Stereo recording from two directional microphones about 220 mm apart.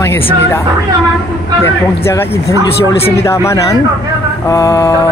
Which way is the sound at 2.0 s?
10° left (ahead or behind).